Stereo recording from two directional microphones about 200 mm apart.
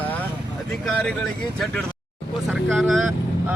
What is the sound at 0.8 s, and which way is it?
A man's voice, 5° left (ahead or behind).